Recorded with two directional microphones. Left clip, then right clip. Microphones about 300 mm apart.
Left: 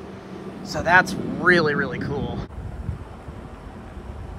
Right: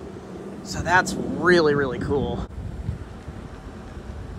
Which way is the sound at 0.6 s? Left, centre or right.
Centre.